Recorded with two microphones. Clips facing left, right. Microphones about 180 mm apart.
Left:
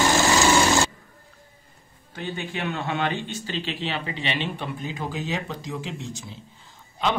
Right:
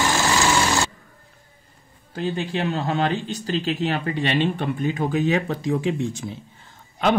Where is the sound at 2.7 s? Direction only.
35° right (ahead or behind).